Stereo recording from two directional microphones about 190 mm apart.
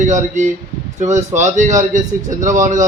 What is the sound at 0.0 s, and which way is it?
A man's voice, 40° right (ahead or behind).